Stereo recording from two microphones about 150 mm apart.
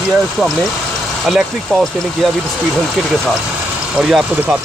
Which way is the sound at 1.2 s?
Centre (ahead or behind).